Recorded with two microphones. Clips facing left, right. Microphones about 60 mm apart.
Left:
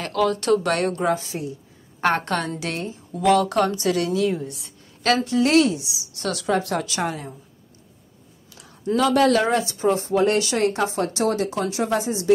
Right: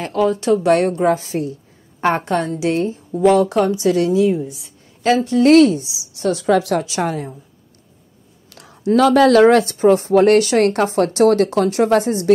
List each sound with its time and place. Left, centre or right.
0.0 s speech: right
0.3 s speech: centre
0.7 s speech: right
1.0 s speech: right
2.0 s a woman's voice: centre
2.7 s a woman's voice: right
4.3 s speech: centre
5.2 s speech: right
6.1 s a woman's voice: right
6.4 s a woman's voice: right
7.0 s speech: right
8.5 s speech: right
9.8 s speech: right
10.1 s a woman's voice: right